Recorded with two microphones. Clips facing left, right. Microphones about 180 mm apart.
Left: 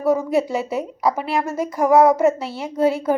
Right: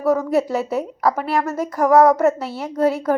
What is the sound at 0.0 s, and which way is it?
A woman's voice, centre (ahead or behind).